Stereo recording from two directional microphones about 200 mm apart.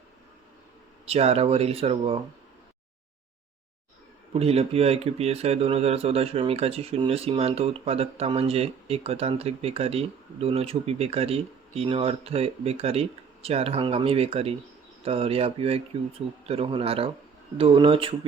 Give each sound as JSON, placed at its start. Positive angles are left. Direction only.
{"t": 1.0, "sound": "speech", "side_deg": -30}
{"t": 4.4, "sound": "speech", "side_deg": -30}